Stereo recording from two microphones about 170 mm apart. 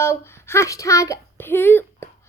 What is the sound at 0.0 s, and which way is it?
A child's voice, 15° left (ahead or behind).